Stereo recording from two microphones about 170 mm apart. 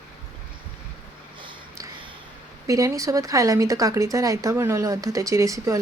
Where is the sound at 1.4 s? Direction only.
30° right (ahead or behind).